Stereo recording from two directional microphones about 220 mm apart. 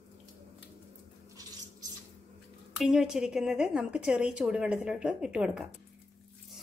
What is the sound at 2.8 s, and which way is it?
A woman's voice, centre (ahead or behind).